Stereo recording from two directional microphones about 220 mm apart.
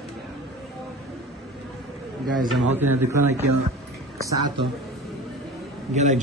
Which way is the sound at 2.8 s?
10° right (ahead or behind).